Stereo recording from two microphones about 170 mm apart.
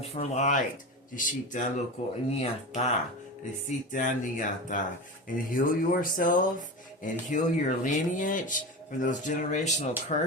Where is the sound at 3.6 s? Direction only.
50° left (ahead or behind).